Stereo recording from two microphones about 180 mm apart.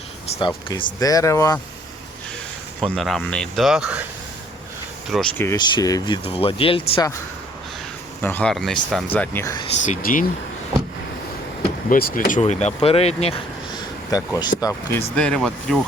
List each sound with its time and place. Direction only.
0.3 s speech: 25° left (ahead or behind)
2.8 s speech: centre (ahead or behind)
5.1 s speech: 5° left (ahead or behind)
5.5 s speech: 20° left (ahead or behind)
8.2 s speech: 10° left (ahead or behind)
9.8 s speech: 45° left (ahead or behind)
11.9 s speech: 50° left (ahead or behind); by 13.4 s 35° left (ahead or behind)
14.1 s speech: 20° left (ahead or behind); by 15.8 s centre (ahead or behind)